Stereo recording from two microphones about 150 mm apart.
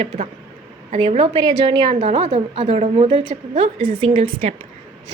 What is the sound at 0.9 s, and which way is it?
A woman's voice, 40° right (ahead or behind).